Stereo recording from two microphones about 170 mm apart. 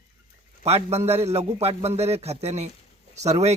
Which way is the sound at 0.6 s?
40° right (ahead or behind).